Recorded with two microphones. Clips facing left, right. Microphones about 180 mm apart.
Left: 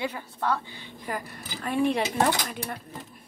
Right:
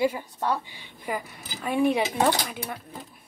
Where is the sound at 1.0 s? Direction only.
5° right (ahead or behind).